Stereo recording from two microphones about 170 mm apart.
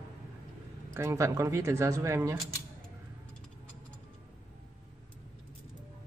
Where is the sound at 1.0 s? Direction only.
15° right (ahead or behind).